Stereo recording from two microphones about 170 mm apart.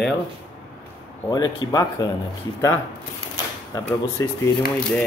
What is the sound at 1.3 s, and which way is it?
Speech, 25° left (ahead or behind).